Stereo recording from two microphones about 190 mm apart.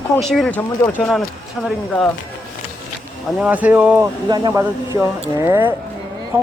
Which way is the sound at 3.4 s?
10° right (ahead or behind).